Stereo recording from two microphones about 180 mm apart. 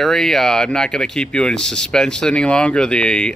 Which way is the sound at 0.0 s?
Centre (ahead or behind).